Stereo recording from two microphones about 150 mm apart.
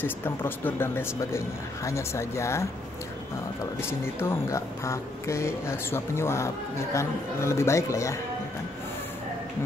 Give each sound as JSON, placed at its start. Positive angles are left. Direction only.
{"t": 0.0, "sound": "speech", "side_deg": 15}
{"t": 3.8, "sound": "speech", "side_deg": 15}